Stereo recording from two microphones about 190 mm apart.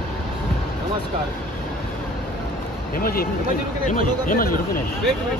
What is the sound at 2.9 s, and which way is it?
Speech, 50° left (ahead or behind).